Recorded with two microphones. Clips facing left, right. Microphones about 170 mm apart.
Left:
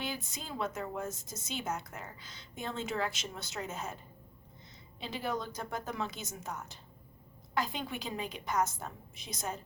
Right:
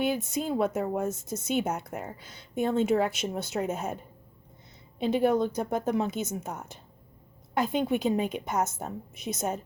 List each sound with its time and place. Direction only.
0.0 s speech: 60° right (ahead or behind)
4.9 s a woman's voice: 50° right (ahead or behind)